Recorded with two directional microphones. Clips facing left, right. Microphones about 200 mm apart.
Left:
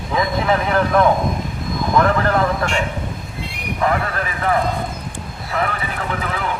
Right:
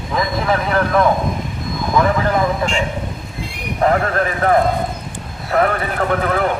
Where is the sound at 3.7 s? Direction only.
40° right (ahead or behind).